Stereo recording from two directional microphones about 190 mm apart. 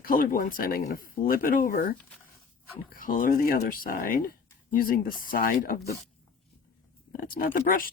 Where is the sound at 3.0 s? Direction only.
45° left (ahead or behind).